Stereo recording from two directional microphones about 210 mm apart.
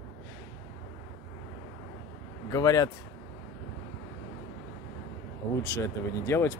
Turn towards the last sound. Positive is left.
turn(degrees=15)  # may be behind; listen again after turning